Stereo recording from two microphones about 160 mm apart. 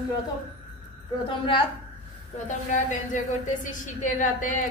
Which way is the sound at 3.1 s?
55° left (ahead or behind).